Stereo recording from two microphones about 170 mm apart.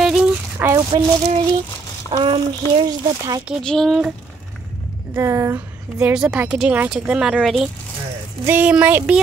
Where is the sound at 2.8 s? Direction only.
20° right (ahead or behind).